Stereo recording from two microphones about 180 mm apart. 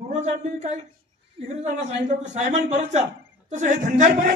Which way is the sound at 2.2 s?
40° right (ahead or behind).